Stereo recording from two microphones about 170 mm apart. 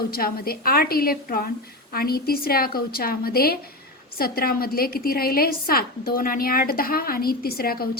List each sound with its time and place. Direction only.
0.1 s a woman's voice: 60° left (ahead or behind)